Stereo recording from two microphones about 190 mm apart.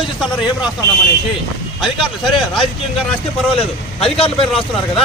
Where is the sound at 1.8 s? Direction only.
Centre (ahead or behind).